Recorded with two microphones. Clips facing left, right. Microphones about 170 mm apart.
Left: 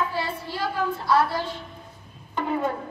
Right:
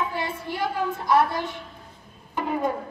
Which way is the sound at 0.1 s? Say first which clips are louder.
Even; 20° right (ahead or behind).